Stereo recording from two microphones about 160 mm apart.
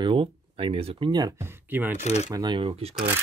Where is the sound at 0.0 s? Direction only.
30° right (ahead or behind).